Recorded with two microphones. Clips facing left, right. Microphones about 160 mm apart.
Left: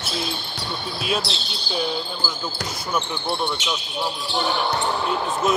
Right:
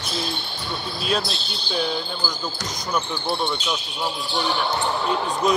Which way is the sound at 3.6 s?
85° left.